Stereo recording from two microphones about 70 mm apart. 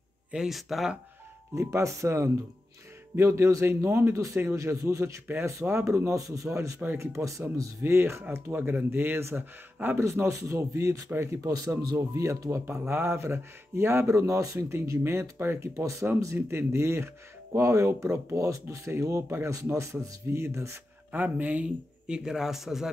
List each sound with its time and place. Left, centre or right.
0.3 s speech: centre
1.5 s speech: right
3.6 s speech: right
6.2 s speech: right
6.5 s speech: right
12.8 s speech: right
15.7 s speech: right
16.3 s speech: right
19.5 s speech: right
21.1 s speech: right; by 22.8 s centre